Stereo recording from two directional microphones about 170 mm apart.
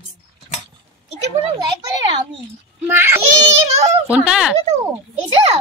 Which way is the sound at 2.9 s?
15° right (ahead or behind).